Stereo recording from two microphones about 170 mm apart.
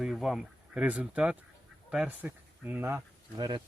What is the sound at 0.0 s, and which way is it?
Speech, centre (ahead or behind).